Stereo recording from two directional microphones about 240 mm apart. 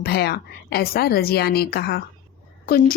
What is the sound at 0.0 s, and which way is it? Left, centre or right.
A woman's voice, left.